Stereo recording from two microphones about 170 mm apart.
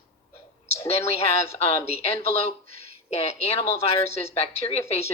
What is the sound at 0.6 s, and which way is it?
Speech, 40° left (ahead or behind).